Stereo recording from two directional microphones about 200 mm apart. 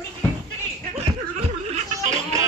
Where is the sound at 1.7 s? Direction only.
35° right (ahead or behind).